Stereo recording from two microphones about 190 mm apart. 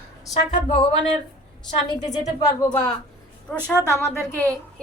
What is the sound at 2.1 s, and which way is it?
Speech, 20° left (ahead or behind).